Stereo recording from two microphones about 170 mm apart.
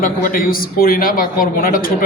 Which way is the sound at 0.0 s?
55° left (ahead or behind).